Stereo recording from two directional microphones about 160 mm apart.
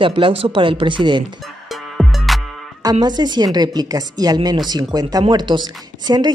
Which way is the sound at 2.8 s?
25° right (ahead or behind).